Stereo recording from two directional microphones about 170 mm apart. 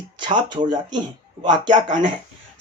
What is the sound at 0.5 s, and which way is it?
Speech, 25° right (ahead or behind).